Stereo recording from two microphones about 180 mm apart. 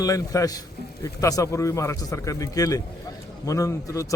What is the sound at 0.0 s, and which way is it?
A man's voice, 20° left (ahead or behind).